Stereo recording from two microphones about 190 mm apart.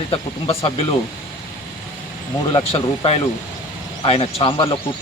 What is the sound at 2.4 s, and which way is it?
Speech, 25° left (ahead or behind).